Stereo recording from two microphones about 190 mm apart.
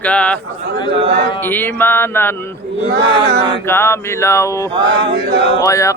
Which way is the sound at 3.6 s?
15° left (ahead or behind).